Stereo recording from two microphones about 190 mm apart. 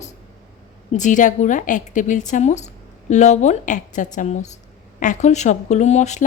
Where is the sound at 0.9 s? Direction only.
40° left (ahead or behind).